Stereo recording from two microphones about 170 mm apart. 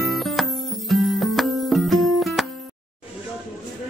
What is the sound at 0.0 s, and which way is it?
Music, centre (ahead or behind).